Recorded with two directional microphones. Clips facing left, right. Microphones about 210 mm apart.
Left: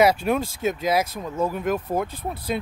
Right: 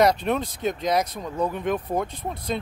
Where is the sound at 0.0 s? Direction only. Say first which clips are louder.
Left 1 dB; 5° left (ahead or behind).